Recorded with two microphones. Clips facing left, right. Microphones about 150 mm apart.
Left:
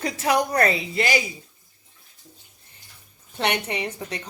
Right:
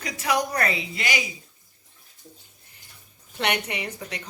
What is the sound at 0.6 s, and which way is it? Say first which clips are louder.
Speech: left 5 dB; 30° left (ahead or behind).